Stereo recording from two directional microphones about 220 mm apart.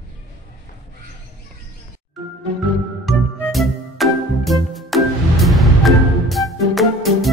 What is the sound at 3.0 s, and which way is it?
Music, centre (ahead or behind).